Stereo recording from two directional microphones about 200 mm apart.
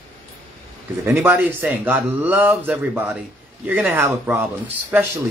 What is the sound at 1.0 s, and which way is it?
Speech, 10° right (ahead or behind).